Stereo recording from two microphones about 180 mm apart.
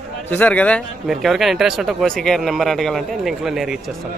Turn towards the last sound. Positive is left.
turn(degrees=0)  # may be behind; listen again after turning